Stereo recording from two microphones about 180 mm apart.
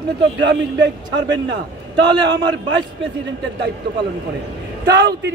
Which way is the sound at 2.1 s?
25° right (ahead or behind).